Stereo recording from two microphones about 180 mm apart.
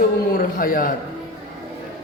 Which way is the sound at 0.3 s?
50° left (ahead or behind).